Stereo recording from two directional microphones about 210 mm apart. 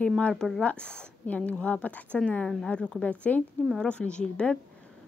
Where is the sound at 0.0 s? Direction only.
5° left (ahead or behind).